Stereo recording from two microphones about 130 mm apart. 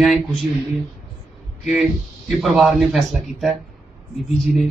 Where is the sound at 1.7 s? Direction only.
Centre (ahead or behind).